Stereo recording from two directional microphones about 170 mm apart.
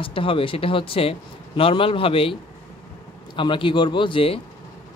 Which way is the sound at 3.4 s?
30° left (ahead or behind).